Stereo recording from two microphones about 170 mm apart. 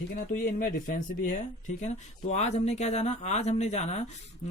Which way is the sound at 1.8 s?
40° left (ahead or behind).